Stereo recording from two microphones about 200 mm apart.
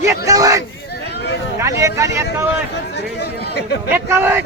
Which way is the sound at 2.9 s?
55° left (ahead or behind).